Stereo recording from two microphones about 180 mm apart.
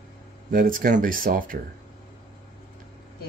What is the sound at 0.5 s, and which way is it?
Speech, 50° right (ahead or behind).